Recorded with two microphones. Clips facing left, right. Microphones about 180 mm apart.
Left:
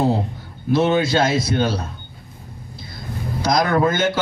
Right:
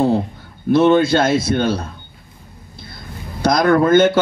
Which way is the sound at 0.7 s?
55° right (ahead or behind).